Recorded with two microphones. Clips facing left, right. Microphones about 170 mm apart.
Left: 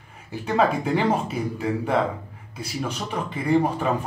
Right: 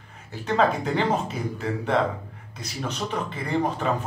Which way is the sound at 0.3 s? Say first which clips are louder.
Left 1 dB; 10° left (ahead or behind).